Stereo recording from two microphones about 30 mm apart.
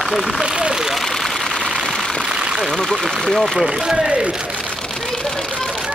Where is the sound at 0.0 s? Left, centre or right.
Centre.